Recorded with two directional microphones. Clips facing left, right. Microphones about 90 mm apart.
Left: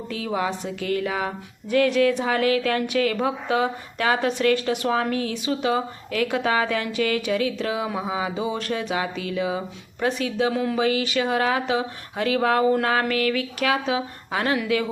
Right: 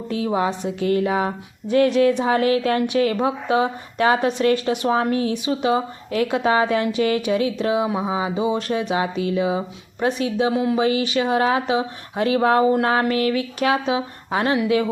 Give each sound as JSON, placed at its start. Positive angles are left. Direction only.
{"t": 0.1, "sound": "a woman's voice", "side_deg": -25}